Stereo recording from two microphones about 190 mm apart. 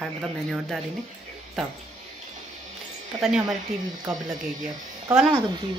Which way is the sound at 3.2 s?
Centre (ahead or behind).